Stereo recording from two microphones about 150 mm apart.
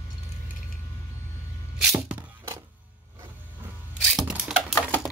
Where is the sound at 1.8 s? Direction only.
5° right (ahead or behind).